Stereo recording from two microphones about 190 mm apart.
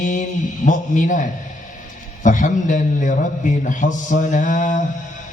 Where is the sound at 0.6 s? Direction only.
40° left (ahead or behind).